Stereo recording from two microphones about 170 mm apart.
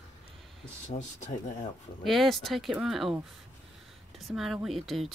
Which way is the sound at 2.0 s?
Centre (ahead or behind).